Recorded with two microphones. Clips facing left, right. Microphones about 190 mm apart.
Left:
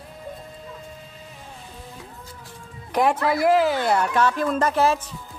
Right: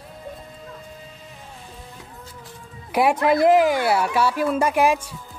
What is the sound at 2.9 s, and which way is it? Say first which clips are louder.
A woman's voice: right 2 dB; 10° right (ahead or behind).